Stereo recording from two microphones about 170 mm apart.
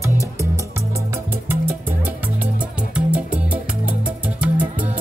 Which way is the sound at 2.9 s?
5° right (ahead or behind).